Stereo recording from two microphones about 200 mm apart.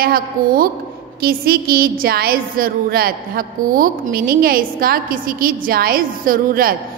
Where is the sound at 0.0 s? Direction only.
45° right (ahead or behind).